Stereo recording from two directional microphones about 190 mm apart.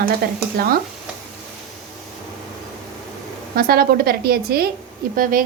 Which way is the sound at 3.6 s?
50° right (ahead or behind).